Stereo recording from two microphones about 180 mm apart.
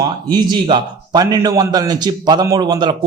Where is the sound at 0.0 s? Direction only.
25° right (ahead or behind).